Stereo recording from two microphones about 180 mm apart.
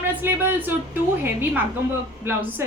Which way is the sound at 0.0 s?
10° right (ahead or behind).